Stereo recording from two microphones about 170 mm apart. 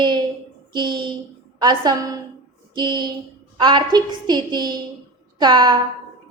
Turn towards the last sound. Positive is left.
turn(degrees=-25)  # may be behind; listen again after turning